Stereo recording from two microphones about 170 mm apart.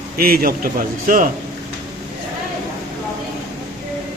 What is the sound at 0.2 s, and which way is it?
A man's voice, 60° right (ahead or behind).